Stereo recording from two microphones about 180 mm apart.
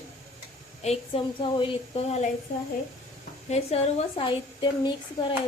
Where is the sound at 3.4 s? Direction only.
35° left (ahead or behind).